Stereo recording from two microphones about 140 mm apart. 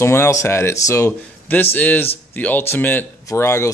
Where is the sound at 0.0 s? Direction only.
20° left (ahead or behind).